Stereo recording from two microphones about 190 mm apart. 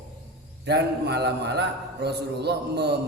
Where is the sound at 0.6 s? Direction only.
60° right (ahead or behind).